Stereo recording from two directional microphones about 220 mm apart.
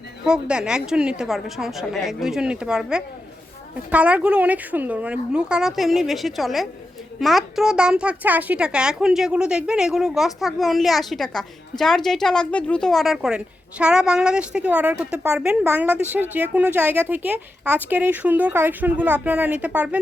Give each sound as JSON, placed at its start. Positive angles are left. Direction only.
{"t": 0.3, "sound": "a child's voice", "side_deg": -5}